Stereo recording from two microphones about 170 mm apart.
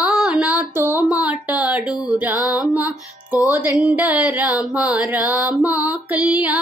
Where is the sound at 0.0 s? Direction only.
5° right (ahead or behind).